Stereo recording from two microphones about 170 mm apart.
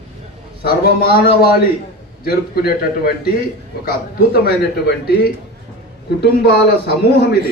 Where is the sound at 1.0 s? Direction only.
60° left (ahead or behind).